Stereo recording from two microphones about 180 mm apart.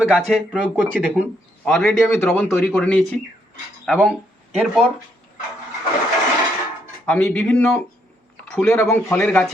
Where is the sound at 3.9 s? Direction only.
5° right (ahead or behind).